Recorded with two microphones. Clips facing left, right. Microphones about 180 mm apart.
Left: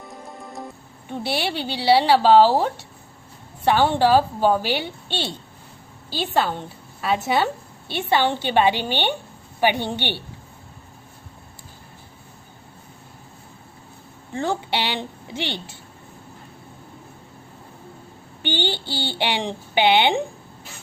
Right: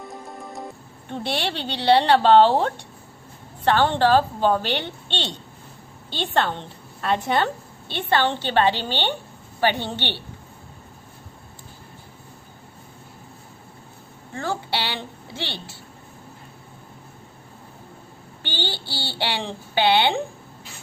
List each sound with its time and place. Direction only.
0.1 s music: centre (ahead or behind)
1.1 s a woman's voice: 10° left (ahead or behind)
14.3 s a woman's voice: 20° left (ahead or behind)
18.4 s a woman's voice: 15° left (ahead or behind)